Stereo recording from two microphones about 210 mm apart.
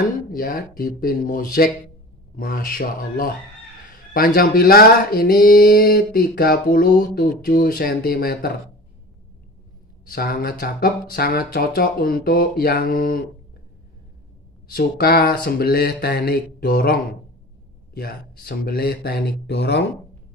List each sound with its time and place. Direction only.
0.3 s speech: 45° left (ahead or behind)
10.1 s speech: 45° left (ahead or behind)
14.7 s speech: 45° left (ahead or behind)